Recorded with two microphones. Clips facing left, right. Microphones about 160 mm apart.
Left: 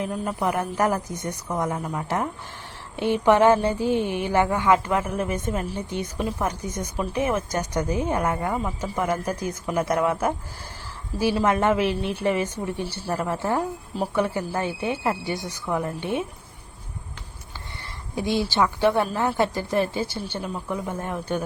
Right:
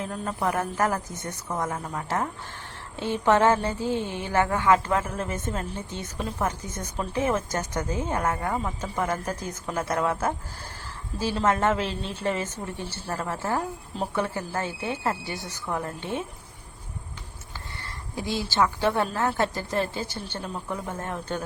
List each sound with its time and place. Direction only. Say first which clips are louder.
0.0 s a woman's voice: left 3 dB; 10° left (ahead or behind)
18.1 s a woman's voice: left 5 dB; 20° left (ahead or behind)